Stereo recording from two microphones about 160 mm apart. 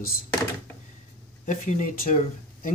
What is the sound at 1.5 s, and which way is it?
Speech, 55° left (ahead or behind).